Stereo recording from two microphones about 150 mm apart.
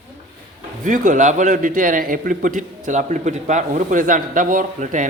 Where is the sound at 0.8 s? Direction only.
60° right (ahead or behind).